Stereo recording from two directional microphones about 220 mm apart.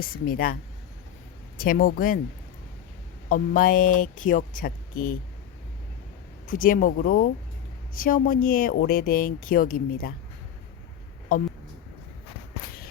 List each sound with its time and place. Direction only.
0.0 s speech: 40° left (ahead or behind)
1.5 s speech: 40° left (ahead or behind)
3.2 s speech: 40° left (ahead or behind)
6.5 s speech: 40° left (ahead or behind)